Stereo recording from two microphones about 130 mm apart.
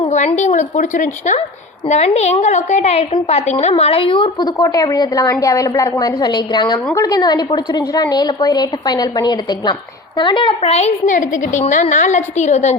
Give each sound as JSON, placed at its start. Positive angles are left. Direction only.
{"t": 0.3, "sound": "speech", "side_deg": 65}
{"t": 1.9, "sound": "a woman's voice", "side_deg": 55}
{"t": 11.1, "sound": "speech", "side_deg": 75}